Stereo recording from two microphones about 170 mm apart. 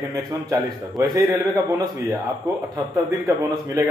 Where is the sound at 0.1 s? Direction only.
20° right (ahead or behind).